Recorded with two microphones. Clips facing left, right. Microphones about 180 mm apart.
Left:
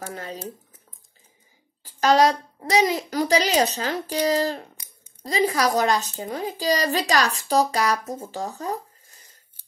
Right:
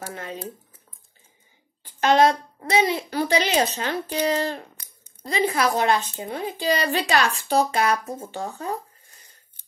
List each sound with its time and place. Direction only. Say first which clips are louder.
0.1 s a child's voice: even; 35° left (ahead or behind)
1.8 s a child's voice: even; 35° left (ahead or behind)